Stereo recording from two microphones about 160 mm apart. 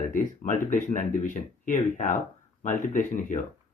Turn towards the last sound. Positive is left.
turn(degrees=55)  # may be behind; listen again after turning